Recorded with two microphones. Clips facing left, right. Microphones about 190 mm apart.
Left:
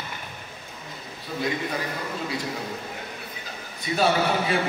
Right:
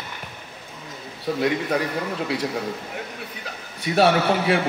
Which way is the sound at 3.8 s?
65° right (ahead or behind).